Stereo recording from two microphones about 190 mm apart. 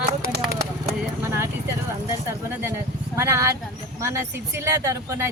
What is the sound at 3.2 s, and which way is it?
Speech, 15° right (ahead or behind).